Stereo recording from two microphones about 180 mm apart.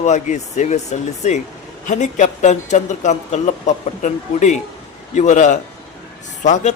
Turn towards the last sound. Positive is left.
turn(degrees=40)  # may be behind; listen again after turning